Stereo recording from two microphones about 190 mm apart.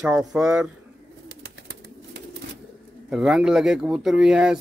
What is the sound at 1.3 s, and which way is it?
Bird, 55° right (ahead or behind).